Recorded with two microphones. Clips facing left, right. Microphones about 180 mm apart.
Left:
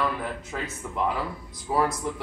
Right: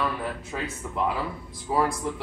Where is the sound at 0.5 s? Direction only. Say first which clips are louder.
Right 1 dB; 5° right (ahead or behind).